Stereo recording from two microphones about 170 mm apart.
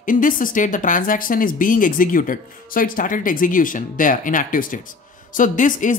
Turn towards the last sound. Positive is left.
turn(degrees=50)  # may be behind; listen again after turning